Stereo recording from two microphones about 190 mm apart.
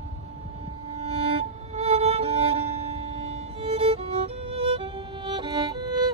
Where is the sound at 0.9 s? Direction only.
30° right (ahead or behind).